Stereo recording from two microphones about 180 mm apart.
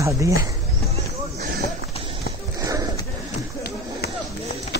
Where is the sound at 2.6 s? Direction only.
20° right (ahead or behind).